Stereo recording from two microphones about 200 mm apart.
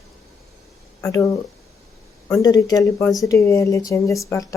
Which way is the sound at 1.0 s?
15° left (ahead or behind).